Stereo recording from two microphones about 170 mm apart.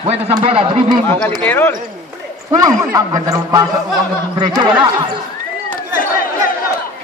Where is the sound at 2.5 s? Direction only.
20° right (ahead or behind).